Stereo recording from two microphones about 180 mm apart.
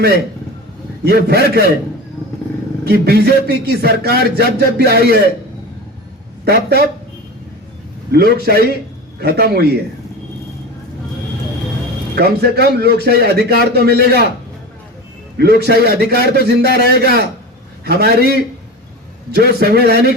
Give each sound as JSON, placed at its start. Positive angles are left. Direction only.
{"t": 1.0, "sound": "speech", "side_deg": -60}
{"t": 2.8, "sound": "speech", "side_deg": -65}
{"t": 6.4, "sound": "a man's voice", "side_deg": -65}
{"t": 8.1, "sound": "speech", "side_deg": -60}
{"t": 12.1, "sound": "speech", "side_deg": -60}
{"t": 15.4, "sound": "speech", "side_deg": -60}